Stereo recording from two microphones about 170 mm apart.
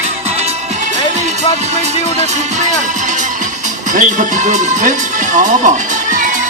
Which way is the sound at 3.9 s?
45° right (ahead or behind).